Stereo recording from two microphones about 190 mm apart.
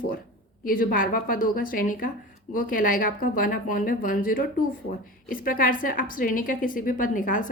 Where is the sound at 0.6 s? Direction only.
50° left (ahead or behind).